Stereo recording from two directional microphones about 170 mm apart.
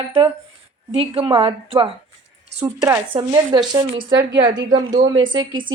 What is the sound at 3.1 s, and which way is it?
Speech, 30° right (ahead or behind).